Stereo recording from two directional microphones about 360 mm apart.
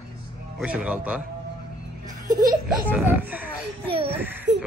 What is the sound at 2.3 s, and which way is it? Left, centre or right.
Speech, centre.